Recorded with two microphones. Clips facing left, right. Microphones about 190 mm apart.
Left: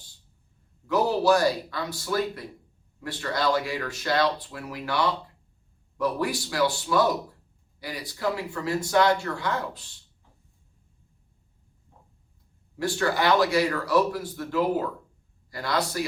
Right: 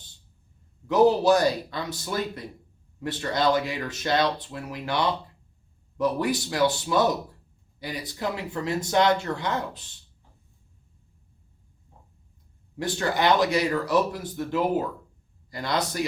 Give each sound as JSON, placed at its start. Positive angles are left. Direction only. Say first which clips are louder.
{"t": 0.9, "sound": "speech", "louder": "right 3 dB", "side_deg": -20}
{"t": 12.7, "sound": "speech", "louder": "left 1 dB", "side_deg": -20}